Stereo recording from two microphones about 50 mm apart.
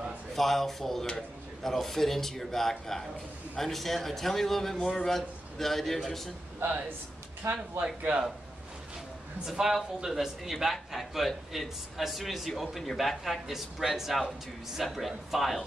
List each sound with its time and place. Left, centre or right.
0.3 s a man's voice: centre
7.4 s speech: right
9.5 s a man's voice: centre